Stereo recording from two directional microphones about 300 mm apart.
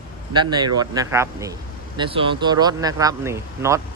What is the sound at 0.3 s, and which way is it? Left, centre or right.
Speech, centre.